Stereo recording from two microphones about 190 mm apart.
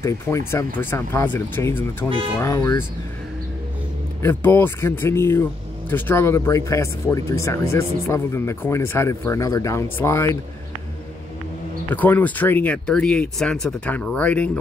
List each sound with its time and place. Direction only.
0.0 s speech: 15° left (ahead or behind)
4.2 s speech: 10° left (ahead or behind)
11.9 s speech: 10° left (ahead or behind)